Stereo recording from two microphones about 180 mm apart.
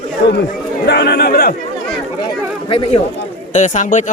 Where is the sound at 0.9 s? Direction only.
65° left (ahead or behind).